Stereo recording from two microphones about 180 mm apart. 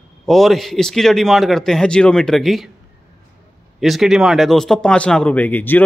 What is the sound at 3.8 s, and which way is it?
Speech, centre (ahead or behind).